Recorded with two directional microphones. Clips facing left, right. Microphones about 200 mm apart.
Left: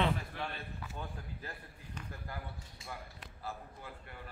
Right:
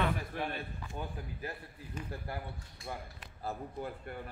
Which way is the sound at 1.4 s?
10° right (ahead or behind).